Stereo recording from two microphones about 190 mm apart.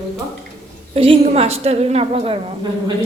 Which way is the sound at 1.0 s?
30° right (ahead or behind).